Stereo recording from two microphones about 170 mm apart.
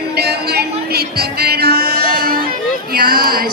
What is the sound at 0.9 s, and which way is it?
Music, 65° right (ahead or behind).